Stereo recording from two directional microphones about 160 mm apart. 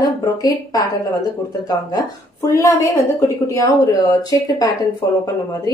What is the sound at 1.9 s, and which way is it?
A woman's voice, 20° left (ahead or behind).